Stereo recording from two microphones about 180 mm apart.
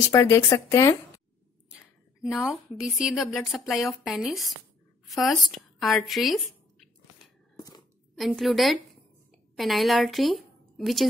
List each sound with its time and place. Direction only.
0.1 s speech: 15° left (ahead or behind)
2.4 s a woman's voice: 5° right (ahead or behind)
7.5 s scissors: 20° left (ahead or behind)
8.2 s a woman's voice: centre (ahead or behind)